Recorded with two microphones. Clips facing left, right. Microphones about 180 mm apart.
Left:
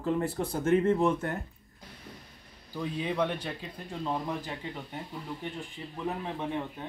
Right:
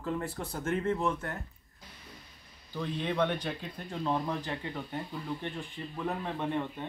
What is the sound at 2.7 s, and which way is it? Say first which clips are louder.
Speech: left 1 dB; 5° left (ahead or behind).